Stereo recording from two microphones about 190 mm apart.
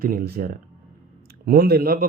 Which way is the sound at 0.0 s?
50° right (ahead or behind).